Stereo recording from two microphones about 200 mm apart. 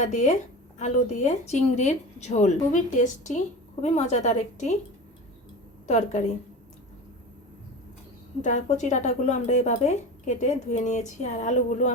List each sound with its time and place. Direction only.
0.0 s speech: 40° left (ahead or behind)
5.9 s speech: 35° left (ahead or behind)
8.4 s speech: 35° left (ahead or behind)